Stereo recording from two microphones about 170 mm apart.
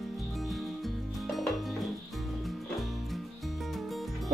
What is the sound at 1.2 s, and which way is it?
Music, centre (ahead or behind).